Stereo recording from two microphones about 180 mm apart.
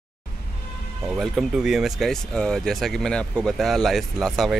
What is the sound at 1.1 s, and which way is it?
Speech, centre (ahead or behind).